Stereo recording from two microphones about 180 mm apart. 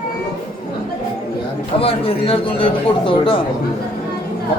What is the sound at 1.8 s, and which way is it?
A man's voice, 30° left (ahead or behind).